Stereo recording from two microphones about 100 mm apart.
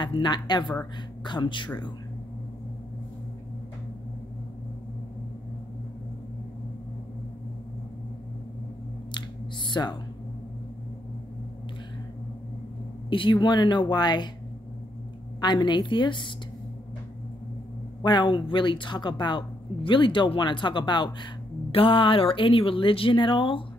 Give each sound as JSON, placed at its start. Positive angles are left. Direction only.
{"t": 0.0, "sound": "a woman's voice", "side_deg": 50}
{"t": 9.7, "sound": "speech", "side_deg": 45}
{"t": 13.1, "sound": "a woman's voice", "side_deg": 55}
{"t": 15.4, "sound": "a woman's voice", "side_deg": 45}
{"t": 18.0, "sound": "a woman's voice", "side_deg": 50}
{"t": 21.7, "sound": "speech", "side_deg": 60}